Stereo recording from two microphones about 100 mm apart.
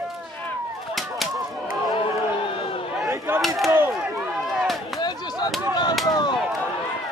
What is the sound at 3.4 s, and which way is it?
Chop, centre (ahead or behind).